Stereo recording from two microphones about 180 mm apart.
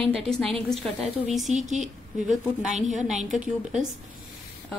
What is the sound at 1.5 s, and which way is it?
Speech, 40° right (ahead or behind).